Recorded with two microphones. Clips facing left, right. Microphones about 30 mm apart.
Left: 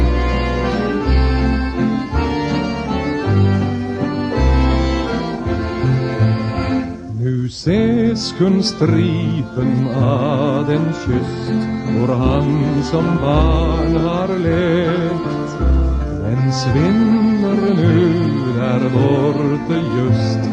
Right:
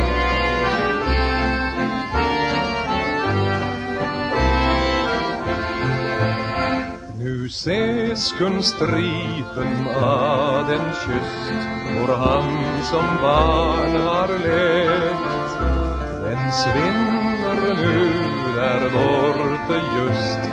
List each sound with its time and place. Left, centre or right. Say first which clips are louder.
0.6 s music: left 1 dB; centre
1.8 s accordion: left 3 dB; centre
4.6 s music: left 1 dB; right
7.9 s music: left 5 dB; centre
9.7 s music: left 2 dB; right
11.1 s music: left 4 dB; right
13.7 s music: left 2 dB; right
14.5 s music: left 1 dB; right
16.6 s music: left 5 dB; centre
17.2 s music: left 5 dB; right
17.6 s music: left 3 dB; centre
19.0 s music: left 2 dB; right
19.4 s music: left 3 dB; right